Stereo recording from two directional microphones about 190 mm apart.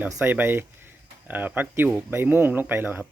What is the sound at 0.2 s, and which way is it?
Speech, 10° right (ahead or behind).